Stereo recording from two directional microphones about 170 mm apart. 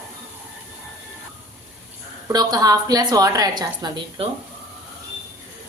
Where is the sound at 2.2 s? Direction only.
25° right (ahead or behind).